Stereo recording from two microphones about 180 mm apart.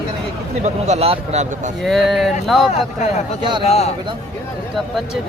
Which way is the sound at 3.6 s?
35° left (ahead or behind).